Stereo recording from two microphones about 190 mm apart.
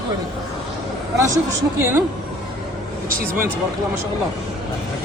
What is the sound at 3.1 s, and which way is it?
Speech, 50° right (ahead or behind).